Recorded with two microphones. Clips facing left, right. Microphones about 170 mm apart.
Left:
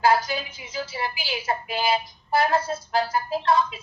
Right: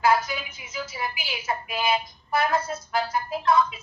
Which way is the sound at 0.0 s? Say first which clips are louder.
Left 1 dB; 30° left (ahead or behind).